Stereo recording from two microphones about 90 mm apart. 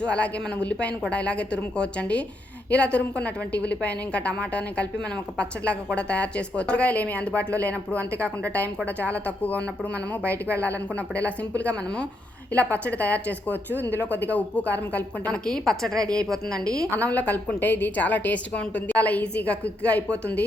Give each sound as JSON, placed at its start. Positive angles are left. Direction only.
{"t": 0.0, "sound": "a woman's voice", "side_deg": 15}
{"t": 16.5, "sound": "a woman's voice", "side_deg": -40}
{"t": 17.0, "sound": "a woman's voice", "side_deg": 15}